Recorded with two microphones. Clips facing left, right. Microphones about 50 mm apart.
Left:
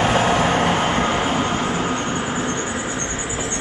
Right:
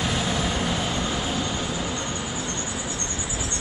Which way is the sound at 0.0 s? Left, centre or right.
Left.